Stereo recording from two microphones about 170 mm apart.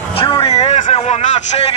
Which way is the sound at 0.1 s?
35° left (ahead or behind).